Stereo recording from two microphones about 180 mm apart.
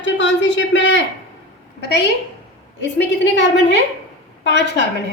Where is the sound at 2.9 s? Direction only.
75° left (ahead or behind).